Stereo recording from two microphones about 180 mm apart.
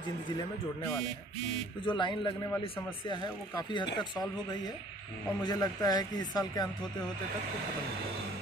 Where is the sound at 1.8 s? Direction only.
25° left (ahead or behind).